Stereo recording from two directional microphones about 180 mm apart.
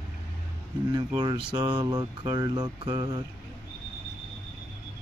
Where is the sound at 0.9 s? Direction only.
25° right (ahead or behind).